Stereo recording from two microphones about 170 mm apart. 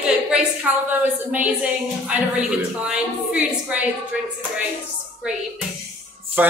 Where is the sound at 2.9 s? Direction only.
5° right (ahead or behind).